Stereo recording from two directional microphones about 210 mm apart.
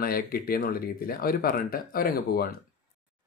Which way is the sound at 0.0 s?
45° left (ahead or behind).